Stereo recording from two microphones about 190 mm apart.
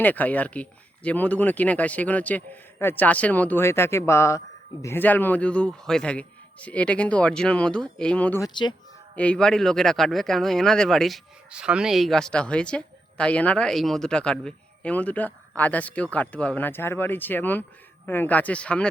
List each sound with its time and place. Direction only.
0.0 s speech: 10° left (ahead or behind)
8.4 s speech: 25° left (ahead or behind)
9.1 s a woman's voice: 5° left (ahead or behind)